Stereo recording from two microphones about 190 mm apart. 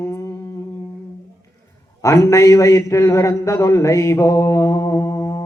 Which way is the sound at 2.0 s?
15° left (ahead or behind).